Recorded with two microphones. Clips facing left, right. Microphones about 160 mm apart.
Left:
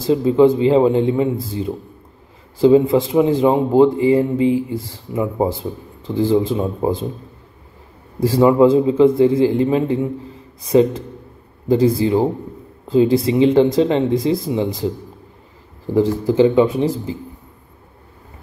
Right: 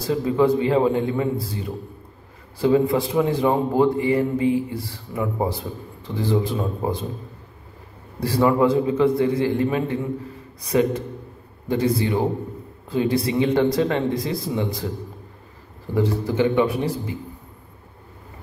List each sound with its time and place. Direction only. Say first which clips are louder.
0.0 s a man's voice: left 7 dB; 25° left (ahead or behind)
2.6 s a man's voice: left 6 dB; 25° left (ahead or behind)
8.2 s a man's voice: left 6 dB; 20° left (ahead or behind)
11.7 s a man's voice: left 6 dB; 30° left (ahead or behind)
15.9 s a man's voice: left 6 dB; 30° left (ahead or behind)